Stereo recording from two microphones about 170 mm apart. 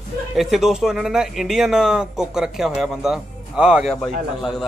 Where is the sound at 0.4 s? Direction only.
Centre (ahead or behind).